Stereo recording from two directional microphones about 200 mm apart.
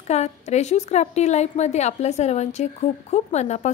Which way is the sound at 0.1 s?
35° left (ahead or behind).